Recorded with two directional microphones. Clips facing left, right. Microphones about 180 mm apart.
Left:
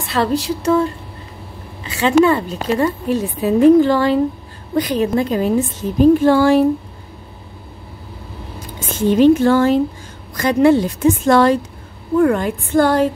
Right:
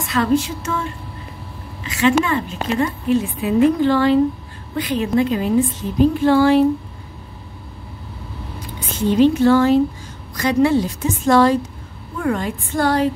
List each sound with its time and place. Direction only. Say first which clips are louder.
0.0 s a woman's voice: right 1 dB; 35° left (ahead or behind)
8.7 s a woman's voice: left 2 dB; 50° left (ahead or behind)